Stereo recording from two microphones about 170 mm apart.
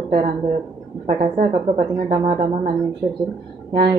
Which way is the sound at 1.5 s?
30° right (ahead or behind).